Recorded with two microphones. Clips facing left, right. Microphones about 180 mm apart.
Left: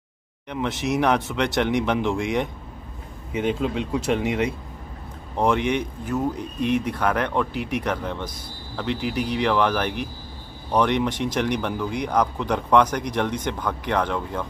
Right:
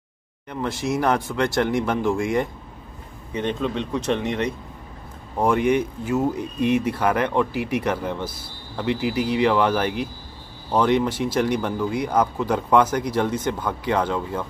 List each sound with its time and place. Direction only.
0.5 s speech: centre (ahead or behind)
5.4 s speech: 5° right (ahead or behind)
6.3 s speech: 60° right (ahead or behind)
6.8 s speech: 10° right (ahead or behind)
9.4 s speech: 10° right (ahead or behind)